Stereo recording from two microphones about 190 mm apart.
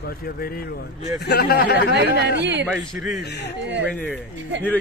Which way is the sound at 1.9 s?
60° right (ahead or behind).